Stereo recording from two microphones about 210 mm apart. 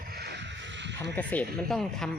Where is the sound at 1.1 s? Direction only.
5° left (ahead or behind).